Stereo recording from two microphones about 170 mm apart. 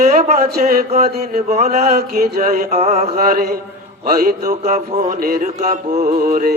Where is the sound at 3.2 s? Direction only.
60° right (ahead or behind).